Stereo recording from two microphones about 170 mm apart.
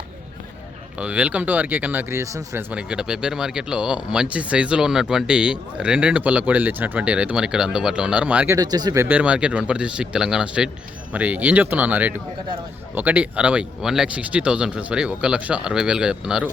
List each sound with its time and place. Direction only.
0.9 s speech: 5° right (ahead or behind)
8.5 s speech: 25° right (ahead or behind)
9.0 s speech: 10° right (ahead or behind)